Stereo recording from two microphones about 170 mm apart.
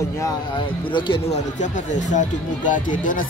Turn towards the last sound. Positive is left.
turn(degrees=50)  # may be behind; listen again after turning